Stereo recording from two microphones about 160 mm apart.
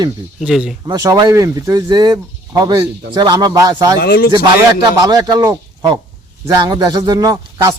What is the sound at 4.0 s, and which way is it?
Speech, 65° left (ahead or behind).